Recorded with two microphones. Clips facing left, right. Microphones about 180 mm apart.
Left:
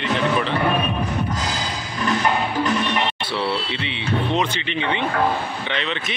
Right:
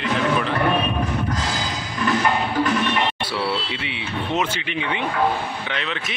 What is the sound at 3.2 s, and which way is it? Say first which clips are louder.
Speech: left 1 dB; 10° right (ahead or behind).